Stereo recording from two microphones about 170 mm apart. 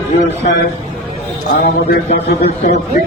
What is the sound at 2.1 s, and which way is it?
Speech, 40° left (ahead or behind).